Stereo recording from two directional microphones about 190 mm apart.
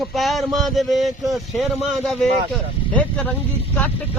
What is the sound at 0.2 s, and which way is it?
Speech, centre (ahead or behind).